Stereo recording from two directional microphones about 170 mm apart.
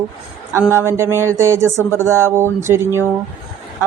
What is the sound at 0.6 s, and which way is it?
Speech, 15° right (ahead or behind).